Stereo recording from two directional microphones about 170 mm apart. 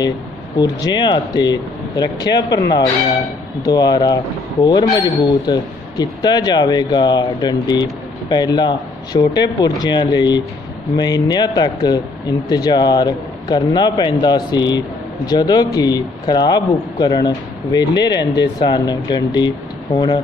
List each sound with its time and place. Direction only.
0.6 s speech: 25° left (ahead or behind)
3.6 s speech: 25° left (ahead or behind)